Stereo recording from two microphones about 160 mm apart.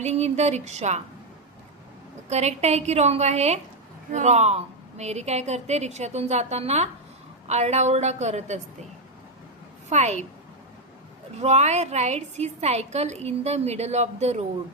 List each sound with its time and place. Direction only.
0.0 s a woman's voice: 45° right (ahead or behind)
2.3 s a woman's voice: 45° right (ahead or behind)
9.9 s a woman's voice: 45° right (ahead or behind)
11.3 s a woman's voice: 45° right (ahead or behind)